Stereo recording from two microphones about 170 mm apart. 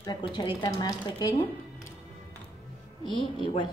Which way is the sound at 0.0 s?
25° left (ahead or behind).